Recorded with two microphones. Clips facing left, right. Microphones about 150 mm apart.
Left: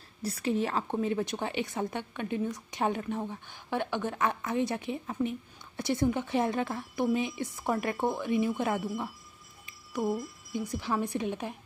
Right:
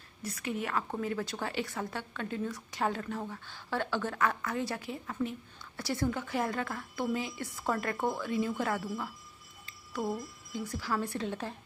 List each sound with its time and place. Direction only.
0.2 s a woman's voice: 30° left (ahead or behind); by 11.5 s 15° left (ahead or behind)